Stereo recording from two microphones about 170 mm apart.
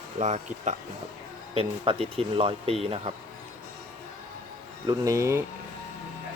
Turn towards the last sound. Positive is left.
turn(degrees=-15)  # may be behind; listen again after turning